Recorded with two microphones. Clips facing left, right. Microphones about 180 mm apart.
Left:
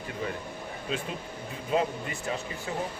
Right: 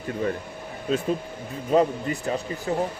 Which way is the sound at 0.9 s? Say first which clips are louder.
Right 8 dB; 40° right (ahead or behind).